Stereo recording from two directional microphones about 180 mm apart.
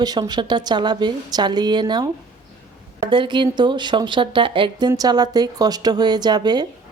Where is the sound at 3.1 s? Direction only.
25° right (ahead or behind).